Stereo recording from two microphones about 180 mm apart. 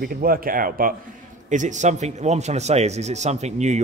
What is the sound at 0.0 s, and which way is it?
Speech, 55° right (ahead or behind).